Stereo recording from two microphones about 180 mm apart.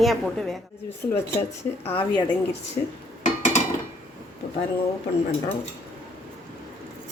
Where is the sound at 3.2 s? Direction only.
45° left (ahead or behind).